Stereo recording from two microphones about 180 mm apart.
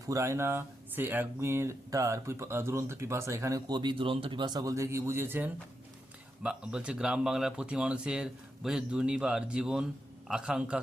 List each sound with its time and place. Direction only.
0.0 s speech: 15° right (ahead or behind)